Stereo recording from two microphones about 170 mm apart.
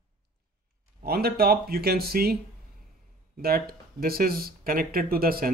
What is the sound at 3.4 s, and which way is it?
Speech, 65° right (ahead or behind).